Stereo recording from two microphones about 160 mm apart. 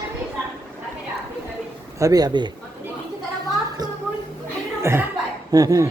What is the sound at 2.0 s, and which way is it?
Speech, 25° right (ahead or behind).